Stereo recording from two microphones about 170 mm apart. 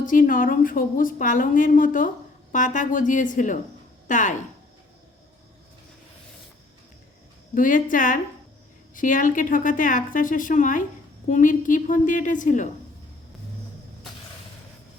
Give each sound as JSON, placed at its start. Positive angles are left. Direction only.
{"t": 0.0, "sound": "a woman's voice", "side_deg": 50}
{"t": 7.5, "sound": "a woman's voice", "side_deg": 50}